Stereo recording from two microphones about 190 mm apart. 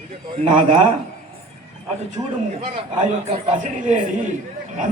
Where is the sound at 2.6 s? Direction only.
30° right (ahead or behind).